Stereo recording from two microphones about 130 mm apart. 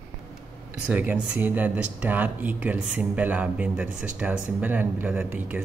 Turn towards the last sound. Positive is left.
turn(degrees=-15)  # may be behind; listen again after turning